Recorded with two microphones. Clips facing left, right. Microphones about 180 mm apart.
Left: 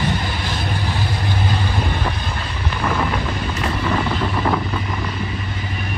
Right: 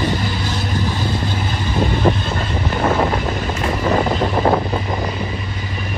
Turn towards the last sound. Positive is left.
turn(degrees=-35)  # may be behind; listen again after turning